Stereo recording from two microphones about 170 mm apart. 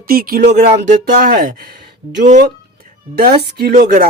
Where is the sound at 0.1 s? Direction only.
60° right (ahead or behind).